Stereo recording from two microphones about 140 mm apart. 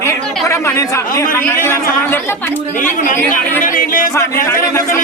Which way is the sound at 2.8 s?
70° left (ahead or behind).